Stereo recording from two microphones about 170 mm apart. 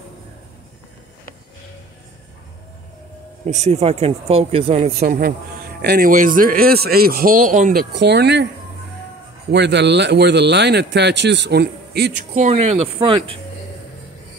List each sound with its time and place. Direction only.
3.4 s speech: 40° right (ahead or behind)
5.0 s speech: 60° right (ahead or behind)
7.9 s speech: 80° right
9.5 s speech: 85° right; by 12.1 s 70° right (ahead or behind)
12.4 s speech: 40° right (ahead or behind)